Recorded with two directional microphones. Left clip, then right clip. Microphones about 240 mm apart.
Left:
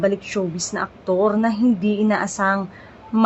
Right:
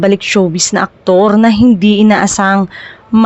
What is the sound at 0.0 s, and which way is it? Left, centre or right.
Speech, right.